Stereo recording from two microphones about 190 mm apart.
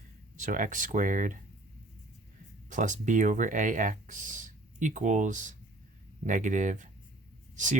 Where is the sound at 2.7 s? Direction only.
40° right (ahead or behind).